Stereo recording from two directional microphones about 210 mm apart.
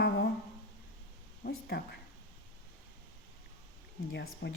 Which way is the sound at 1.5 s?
50° left (ahead or behind).